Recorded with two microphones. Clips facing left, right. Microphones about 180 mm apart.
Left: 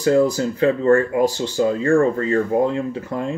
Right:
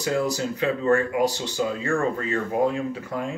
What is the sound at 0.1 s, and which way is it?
Speech, 35° left (ahead or behind).